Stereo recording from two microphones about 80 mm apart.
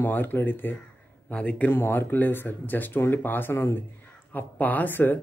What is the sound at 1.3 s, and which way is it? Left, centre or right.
Speech, centre.